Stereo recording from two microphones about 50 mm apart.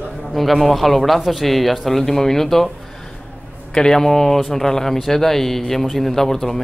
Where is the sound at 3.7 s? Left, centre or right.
Centre.